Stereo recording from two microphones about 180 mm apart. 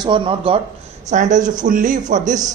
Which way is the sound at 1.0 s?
45° right (ahead or behind).